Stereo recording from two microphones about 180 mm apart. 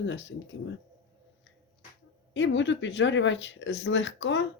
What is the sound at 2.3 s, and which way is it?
Speech, 90° left.